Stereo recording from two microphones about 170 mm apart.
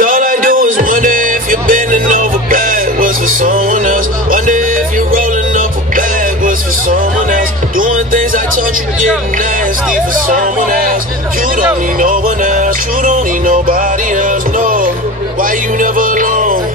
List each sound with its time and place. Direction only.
0.0 s music: 50° right (ahead or behind)
10.2 s speech: 50° right (ahead or behind)
12.0 s music: 50° right (ahead or behind)